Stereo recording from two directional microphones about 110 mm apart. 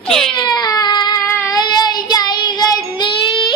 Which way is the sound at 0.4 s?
35° left (ahead or behind).